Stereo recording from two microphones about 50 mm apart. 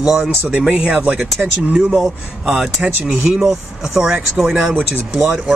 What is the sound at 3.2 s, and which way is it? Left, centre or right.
Speech, centre.